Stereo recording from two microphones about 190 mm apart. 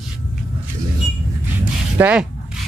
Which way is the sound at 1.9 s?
10° right (ahead or behind).